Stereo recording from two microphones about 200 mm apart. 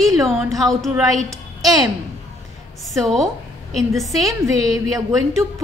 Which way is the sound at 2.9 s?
Centre (ahead or behind).